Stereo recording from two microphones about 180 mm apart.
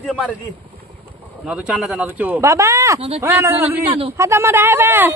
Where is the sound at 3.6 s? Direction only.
30° right (ahead or behind).